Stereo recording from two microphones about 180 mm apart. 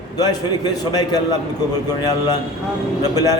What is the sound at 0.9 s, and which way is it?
Speech, 20° left (ahead or behind).